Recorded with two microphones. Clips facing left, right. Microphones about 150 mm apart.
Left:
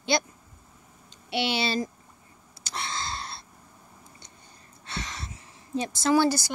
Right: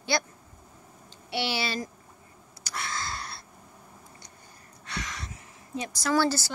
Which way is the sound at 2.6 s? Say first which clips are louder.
Left 1 dB; 25° left (ahead or behind).